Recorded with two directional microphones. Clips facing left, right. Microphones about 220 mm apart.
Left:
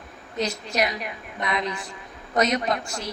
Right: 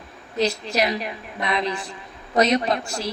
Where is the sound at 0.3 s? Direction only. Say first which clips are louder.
Right 3 dB; 30° right (ahead or behind).